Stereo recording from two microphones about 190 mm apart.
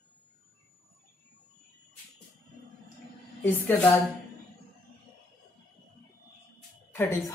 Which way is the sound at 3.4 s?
10° left (ahead or behind).